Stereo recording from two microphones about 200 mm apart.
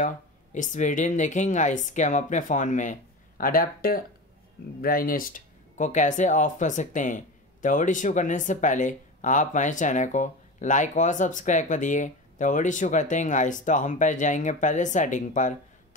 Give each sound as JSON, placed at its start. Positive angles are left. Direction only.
{"t": 0.0, "sound": "speech", "side_deg": 40}